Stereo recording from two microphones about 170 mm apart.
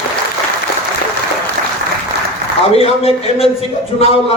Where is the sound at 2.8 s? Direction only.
35° left (ahead or behind).